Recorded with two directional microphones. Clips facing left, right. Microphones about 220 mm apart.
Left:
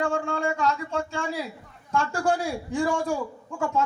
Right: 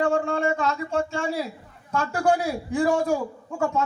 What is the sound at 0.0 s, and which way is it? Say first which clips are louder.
A man's voice: right 4 dB; 35° right (ahead or behind).